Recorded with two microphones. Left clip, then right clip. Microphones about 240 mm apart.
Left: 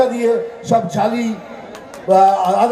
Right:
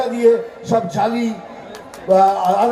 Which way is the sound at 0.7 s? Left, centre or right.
Left.